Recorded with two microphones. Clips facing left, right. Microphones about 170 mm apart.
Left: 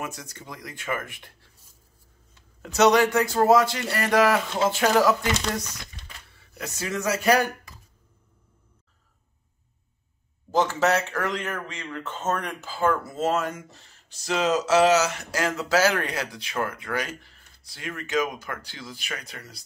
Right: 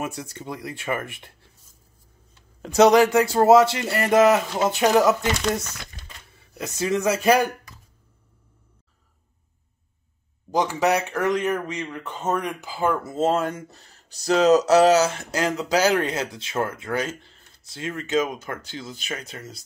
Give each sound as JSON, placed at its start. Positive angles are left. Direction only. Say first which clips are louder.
{"t": 0.0, "sound": "speech", "louder": "right 5 dB", "side_deg": -25}
{"t": 2.6, "sound": "speech", "louder": "right 4 dB", "side_deg": -30}
{"t": 6.3, "sound": "speech", "louder": "right 4 dB", "side_deg": -20}
{"t": 10.5, "sound": "speech", "louder": "right 1 dB", "side_deg": -15}
{"t": 15.3, "sound": "speech", "louder": "right 1 dB", "side_deg": -20}